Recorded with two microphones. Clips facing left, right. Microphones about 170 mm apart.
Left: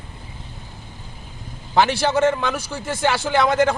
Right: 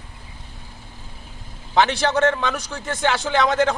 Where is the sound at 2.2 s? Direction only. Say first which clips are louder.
Left 1 dB; 10° left (ahead or behind).